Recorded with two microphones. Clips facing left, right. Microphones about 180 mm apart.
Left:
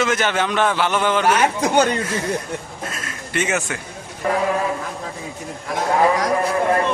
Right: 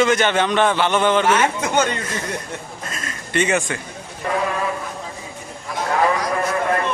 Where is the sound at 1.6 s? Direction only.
35° left (ahead or behind).